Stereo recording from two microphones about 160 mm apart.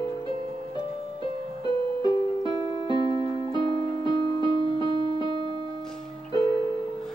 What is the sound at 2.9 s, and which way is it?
Keyboard, 30° right (ahead or behind).